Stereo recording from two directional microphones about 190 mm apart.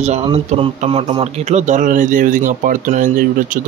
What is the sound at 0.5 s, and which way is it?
Speech, 35° right (ahead or behind).